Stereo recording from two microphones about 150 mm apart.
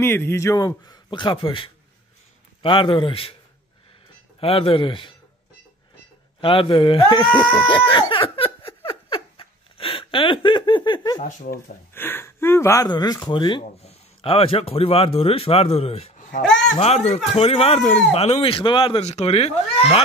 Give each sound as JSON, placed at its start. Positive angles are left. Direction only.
{"t": 0.0, "sound": "a man's voice", "side_deg": 15}
{"t": 4.4, "sound": "speech", "side_deg": 40}
{"t": 6.4, "sound": "speech", "side_deg": 35}
{"t": 7.3, "sound": "speech", "side_deg": 10}
{"t": 7.9, "sound": "a sound", "side_deg": 35}
{"t": 8.6, "sound": "laughter", "side_deg": 35}
{"t": 11.5, "sound": "speech", "side_deg": 15}